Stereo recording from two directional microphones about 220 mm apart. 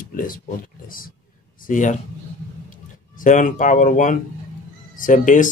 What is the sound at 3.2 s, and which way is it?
Speech, 35° left (ahead or behind).